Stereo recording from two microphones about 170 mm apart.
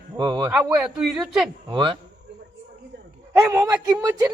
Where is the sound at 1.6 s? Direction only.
25° right (ahead or behind).